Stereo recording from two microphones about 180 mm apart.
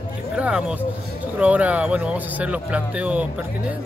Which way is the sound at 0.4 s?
5° right (ahead or behind).